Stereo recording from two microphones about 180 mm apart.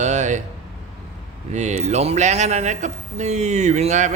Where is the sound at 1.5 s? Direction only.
40° right (ahead or behind).